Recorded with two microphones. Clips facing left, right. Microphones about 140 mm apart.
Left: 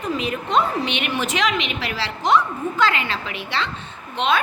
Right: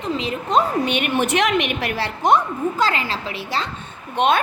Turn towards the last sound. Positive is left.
turn(degrees=-55)  # may be behind; listen again after turning